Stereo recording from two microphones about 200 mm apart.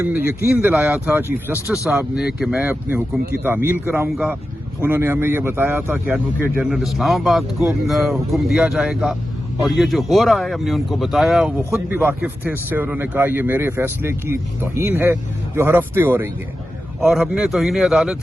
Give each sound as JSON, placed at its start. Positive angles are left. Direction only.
{"t": 0.1, "sound": "speech", "side_deg": 50}
{"t": 0.6, "sound": "speech", "side_deg": -10}